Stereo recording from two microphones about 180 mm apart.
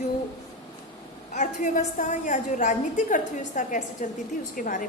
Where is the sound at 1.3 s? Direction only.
45° left (ahead or behind).